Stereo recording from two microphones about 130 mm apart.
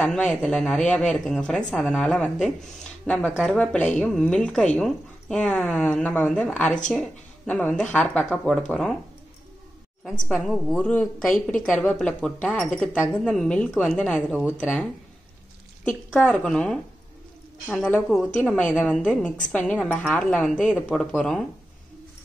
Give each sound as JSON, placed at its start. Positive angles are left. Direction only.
{"t": 0.0, "sound": "a woman's voice", "side_deg": 10}
{"t": 10.2, "sound": "a woman's voice", "side_deg": 0}
{"t": 10.8, "sound": "speech", "side_deg": 10}
{"t": 14.3, "sound": "speech", "side_deg": -5}
{"t": 16.2, "sound": "a woman's voice", "side_deg": 10}
{"t": 18.0, "sound": "speech", "side_deg": 5}